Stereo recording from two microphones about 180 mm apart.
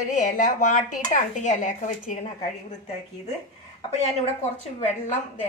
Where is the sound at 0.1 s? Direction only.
45° left (ahead or behind).